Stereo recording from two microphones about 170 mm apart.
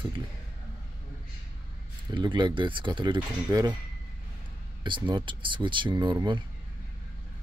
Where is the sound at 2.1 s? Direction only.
25° right (ahead or behind).